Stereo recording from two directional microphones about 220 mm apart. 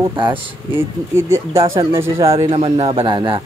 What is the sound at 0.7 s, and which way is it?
Speech, 10° right (ahead or behind).